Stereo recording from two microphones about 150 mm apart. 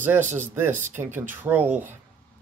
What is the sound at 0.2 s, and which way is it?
Speech, 55° right (ahead or behind).